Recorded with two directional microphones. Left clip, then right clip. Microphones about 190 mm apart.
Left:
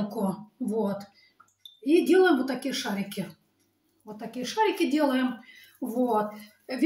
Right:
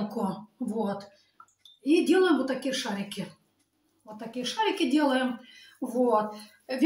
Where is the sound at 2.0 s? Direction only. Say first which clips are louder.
Left 3 dB; 15° right (ahead or behind).